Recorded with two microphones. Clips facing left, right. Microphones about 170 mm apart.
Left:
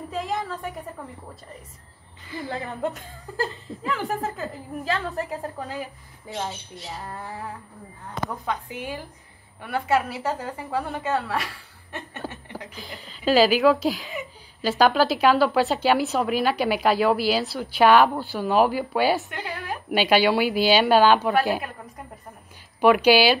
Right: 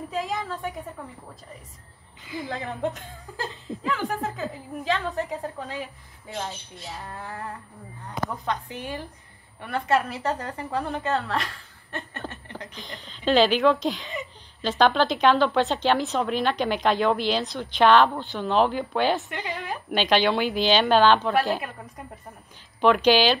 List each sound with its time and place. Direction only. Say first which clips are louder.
0.1 s a sound: left 1 dB; centre (ahead or behind)
2.2 s a woman's voice: even; 15° right (ahead or behind)
2.5 s a woman's voice: left 1 dB; 5° left (ahead or behind)